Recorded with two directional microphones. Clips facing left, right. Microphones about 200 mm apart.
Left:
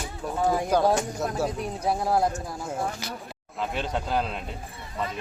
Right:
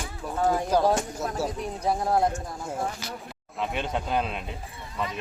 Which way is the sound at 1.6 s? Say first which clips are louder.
Even; 10° left (ahead or behind).